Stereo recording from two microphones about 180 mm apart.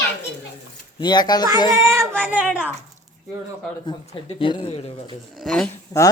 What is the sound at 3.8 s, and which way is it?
Speech, 30° left (ahead or behind).